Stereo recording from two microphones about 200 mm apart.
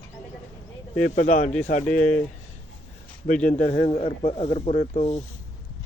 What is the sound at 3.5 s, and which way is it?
Speech, 30° left (ahead or behind).